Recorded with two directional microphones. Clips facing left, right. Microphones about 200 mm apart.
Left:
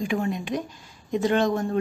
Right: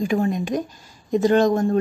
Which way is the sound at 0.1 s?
40° right (ahead or behind).